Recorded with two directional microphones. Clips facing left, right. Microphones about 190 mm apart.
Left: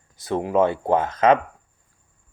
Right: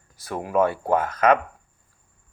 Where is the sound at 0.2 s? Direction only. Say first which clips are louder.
Left 2 dB; 20° left (ahead or behind).